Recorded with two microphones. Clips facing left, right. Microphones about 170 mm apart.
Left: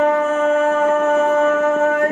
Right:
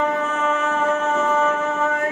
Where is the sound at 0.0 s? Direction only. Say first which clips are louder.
Left 6 dB; 55° left (ahead or behind).